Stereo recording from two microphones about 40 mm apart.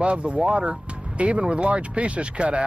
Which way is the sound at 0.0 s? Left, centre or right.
Right.